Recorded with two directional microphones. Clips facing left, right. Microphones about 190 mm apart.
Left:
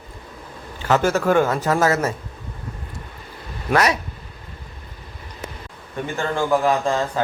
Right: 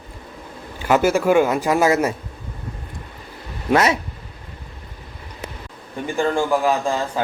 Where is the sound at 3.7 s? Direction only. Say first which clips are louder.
Right 2 dB; 25° right (ahead or behind).